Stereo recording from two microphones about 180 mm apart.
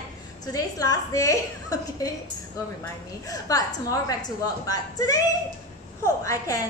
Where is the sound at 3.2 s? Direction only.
20° left (ahead or behind).